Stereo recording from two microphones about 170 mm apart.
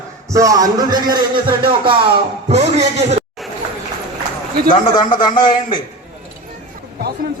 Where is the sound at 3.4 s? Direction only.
Centre (ahead or behind).